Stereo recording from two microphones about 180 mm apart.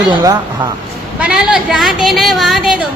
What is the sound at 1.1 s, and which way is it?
A woman's voice, 5° right (ahead or behind).